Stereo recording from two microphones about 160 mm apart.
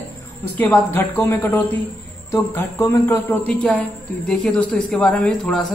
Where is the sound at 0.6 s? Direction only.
15° left (ahead or behind).